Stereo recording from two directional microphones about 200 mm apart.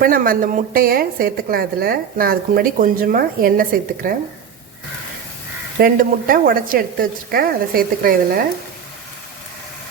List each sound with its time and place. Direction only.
0.0 s a woman's voice: 45° right (ahead or behind)
5.8 s a woman's voice: 45° right (ahead or behind)